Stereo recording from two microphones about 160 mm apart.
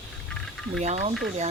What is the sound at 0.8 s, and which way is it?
Speech, 45° right (ahead or behind).